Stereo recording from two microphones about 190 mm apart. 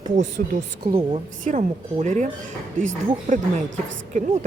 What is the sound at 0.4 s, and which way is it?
Speech, 45° right (ahead or behind).